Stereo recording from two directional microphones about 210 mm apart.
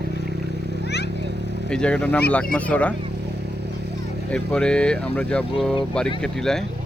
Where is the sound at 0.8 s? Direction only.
55° left (ahead or behind).